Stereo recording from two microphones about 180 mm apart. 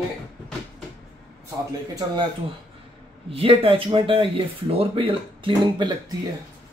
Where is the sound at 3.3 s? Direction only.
30° right (ahead or behind).